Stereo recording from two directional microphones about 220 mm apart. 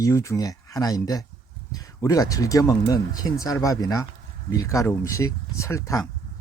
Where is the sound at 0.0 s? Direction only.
15° left (ahead or behind).